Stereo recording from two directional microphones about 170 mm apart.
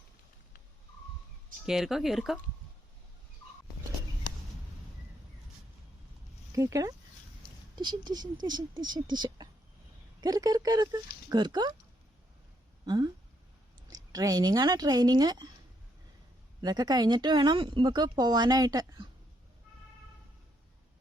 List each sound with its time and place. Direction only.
1.6 s speech: centre (ahead or behind)
6.5 s speech: 20° right (ahead or behind)
12.8 s speech: 25° right (ahead or behind)
16.6 s speech: 25° right (ahead or behind)